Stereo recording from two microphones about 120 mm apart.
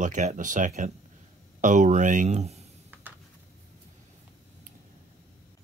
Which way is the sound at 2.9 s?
15° right (ahead or behind).